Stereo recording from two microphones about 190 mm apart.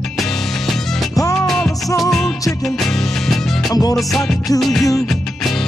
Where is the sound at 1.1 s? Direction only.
15° left (ahead or behind).